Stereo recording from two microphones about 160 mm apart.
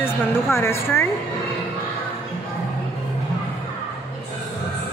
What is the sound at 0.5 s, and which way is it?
Speech, 15° left (ahead or behind).